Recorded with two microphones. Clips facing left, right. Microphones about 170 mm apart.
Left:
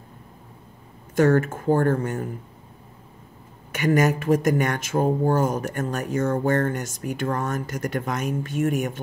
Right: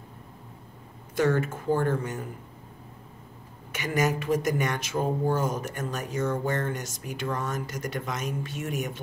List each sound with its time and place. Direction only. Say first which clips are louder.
1.1 s speech: left 6 dB; 50° left (ahead or behind)
3.7 s speech: left 6 dB; 55° left (ahead or behind)